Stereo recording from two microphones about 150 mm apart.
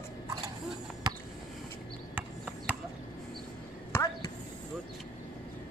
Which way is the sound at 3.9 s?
20° left (ahead or behind).